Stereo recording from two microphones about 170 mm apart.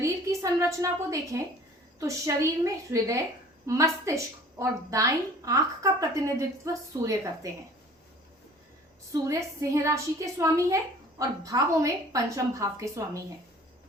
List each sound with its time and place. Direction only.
0.0 s a woman's voice: 20° right (ahead or behind)
9.1 s a woman's voice: 20° right (ahead or behind)